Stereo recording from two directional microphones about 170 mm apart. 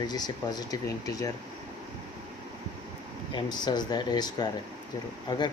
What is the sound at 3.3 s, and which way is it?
Speech, 25° left (ahead or behind).